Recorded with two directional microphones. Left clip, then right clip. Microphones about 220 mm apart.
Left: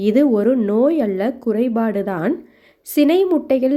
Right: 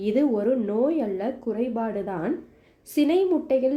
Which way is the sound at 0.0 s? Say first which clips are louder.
Left 7 dB; 35° left (ahead or behind).